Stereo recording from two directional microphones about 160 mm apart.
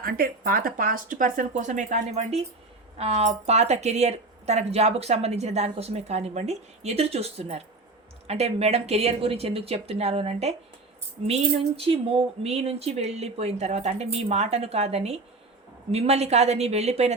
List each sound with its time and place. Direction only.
0.0 s speech: 65° right (ahead or behind); by 17.2 s 40° right (ahead or behind)